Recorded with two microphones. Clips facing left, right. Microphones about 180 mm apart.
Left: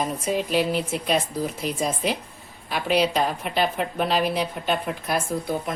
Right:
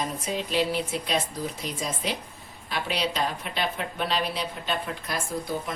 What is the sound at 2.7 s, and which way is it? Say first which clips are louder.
A woman's voice: left 7 dB; 50° left (ahead or behind).